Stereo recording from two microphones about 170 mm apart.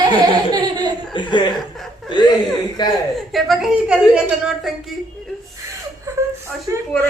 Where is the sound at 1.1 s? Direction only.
30° left (ahead or behind).